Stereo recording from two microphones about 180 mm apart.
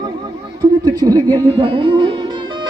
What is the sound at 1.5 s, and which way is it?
Music, 30° right (ahead or behind).